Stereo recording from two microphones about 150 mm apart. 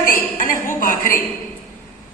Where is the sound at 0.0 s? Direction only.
70° left (ahead or behind).